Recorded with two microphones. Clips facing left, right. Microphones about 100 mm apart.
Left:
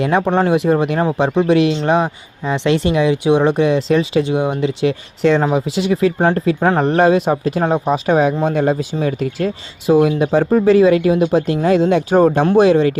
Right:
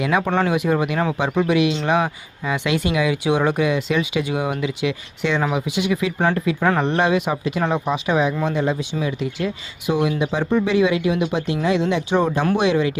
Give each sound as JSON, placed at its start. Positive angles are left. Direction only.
{"t": 0.2, "sound": "speech", "side_deg": 30}
{"t": 12.5, "sound": "speech", "side_deg": 35}